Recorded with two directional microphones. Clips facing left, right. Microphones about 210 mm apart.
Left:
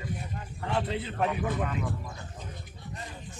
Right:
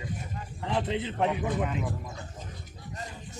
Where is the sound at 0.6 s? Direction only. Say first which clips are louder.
Right 1 dB; 20° right (ahead or behind).